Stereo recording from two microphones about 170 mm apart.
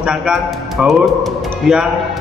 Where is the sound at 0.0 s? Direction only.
5° right (ahead or behind).